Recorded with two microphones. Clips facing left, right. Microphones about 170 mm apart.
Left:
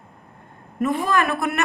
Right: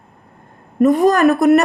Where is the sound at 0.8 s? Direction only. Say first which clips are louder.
Right 10 dB; 40° right (ahead or behind).